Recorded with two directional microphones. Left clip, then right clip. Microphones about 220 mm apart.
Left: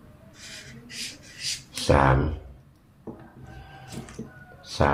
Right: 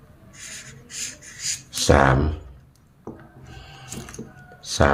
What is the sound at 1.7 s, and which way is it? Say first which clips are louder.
Speech: right 4 dB; 35° right (ahead or behind).